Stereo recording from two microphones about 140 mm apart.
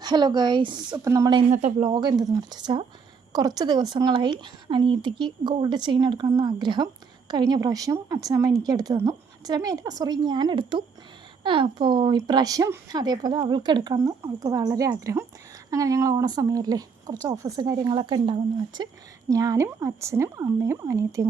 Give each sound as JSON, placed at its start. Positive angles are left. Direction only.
{"t": 0.0, "sound": "speech", "side_deg": -30}
{"t": 1.4, "sound": "speech", "side_deg": -55}
{"t": 1.8, "sound": "speech", "side_deg": -35}